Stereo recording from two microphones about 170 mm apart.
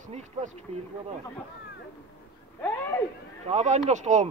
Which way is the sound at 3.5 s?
45° right (ahead or behind).